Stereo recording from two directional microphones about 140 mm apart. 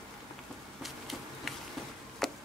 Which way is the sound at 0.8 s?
Centre (ahead or behind).